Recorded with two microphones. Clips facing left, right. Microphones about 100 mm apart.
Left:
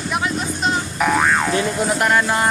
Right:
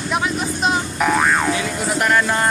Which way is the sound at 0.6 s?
Centre (ahead or behind).